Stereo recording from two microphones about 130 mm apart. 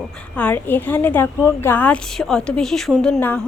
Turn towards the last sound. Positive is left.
turn(degrees=0)  # may be behind; listen again after turning